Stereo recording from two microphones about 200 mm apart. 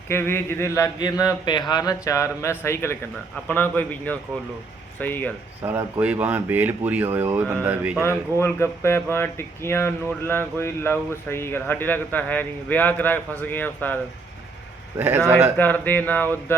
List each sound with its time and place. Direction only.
0.1 s speech: 10° left (ahead or behind)
5.6 s speech: 10° right (ahead or behind)
8.0 s speech: 15° left (ahead or behind)
14.9 s speech: 10° right (ahead or behind)
15.5 s speech: 10° left (ahead or behind)